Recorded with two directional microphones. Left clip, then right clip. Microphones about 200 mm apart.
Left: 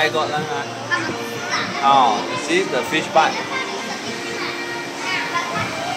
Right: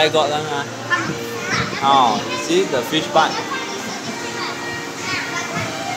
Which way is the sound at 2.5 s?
45° right (ahead or behind).